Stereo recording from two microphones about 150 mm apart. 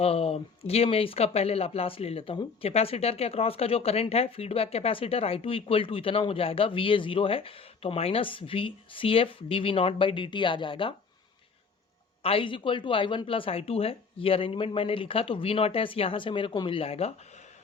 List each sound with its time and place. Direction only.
0.0 s speech: 40° left (ahead or behind)
12.2 s speech: 35° left (ahead or behind)